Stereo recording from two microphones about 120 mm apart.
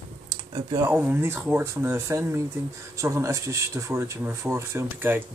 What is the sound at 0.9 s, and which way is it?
Speech, 15° right (ahead or behind).